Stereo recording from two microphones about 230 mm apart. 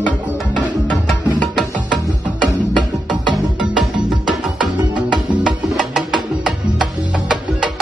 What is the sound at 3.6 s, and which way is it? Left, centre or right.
Music, centre.